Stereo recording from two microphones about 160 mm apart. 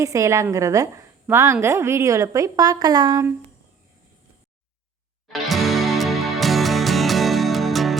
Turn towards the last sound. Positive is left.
turn(degrees=0)  # may be behind; listen again after turning